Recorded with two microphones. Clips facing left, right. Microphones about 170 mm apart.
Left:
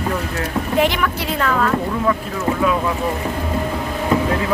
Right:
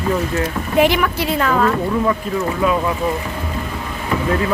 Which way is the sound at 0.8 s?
10° right (ahead or behind).